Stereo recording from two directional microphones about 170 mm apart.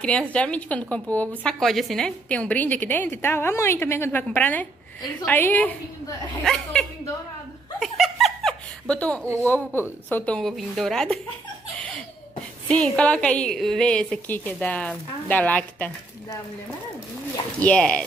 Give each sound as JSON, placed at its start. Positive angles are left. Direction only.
{"t": 0.3, "sound": "a woman's voice", "side_deg": 5}
{"t": 7.8, "sound": "laughter", "side_deg": 0}
{"t": 9.2, "sound": "speech", "side_deg": -15}
{"t": 10.0, "sound": "a woman's voice", "side_deg": 10}
{"t": 12.6, "sound": "a woman's voice", "side_deg": 5}
{"t": 17.6, "sound": "a woman's voice", "side_deg": 5}